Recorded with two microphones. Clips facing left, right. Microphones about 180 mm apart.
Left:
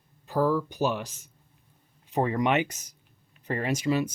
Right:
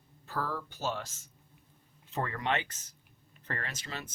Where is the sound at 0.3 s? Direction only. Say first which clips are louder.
Left 10 dB; 15° left (ahead or behind).